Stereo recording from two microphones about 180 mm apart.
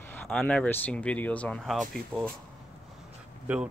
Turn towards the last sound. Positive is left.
turn(degrees=-10)  # may be behind; listen again after turning